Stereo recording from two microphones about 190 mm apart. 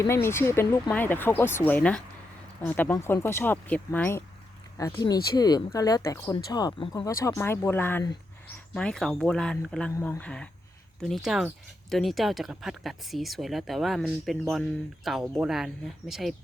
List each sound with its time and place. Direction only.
0.1 s speech: 15° left (ahead or behind)